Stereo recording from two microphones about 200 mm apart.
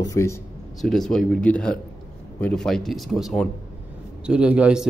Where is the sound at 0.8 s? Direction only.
Centre (ahead or behind).